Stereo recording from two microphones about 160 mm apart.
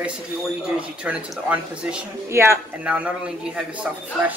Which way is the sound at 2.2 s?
15° right (ahead or behind).